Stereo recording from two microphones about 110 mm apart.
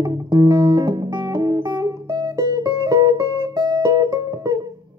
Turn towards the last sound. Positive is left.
turn(degrees=-35)  # may be behind; listen again after turning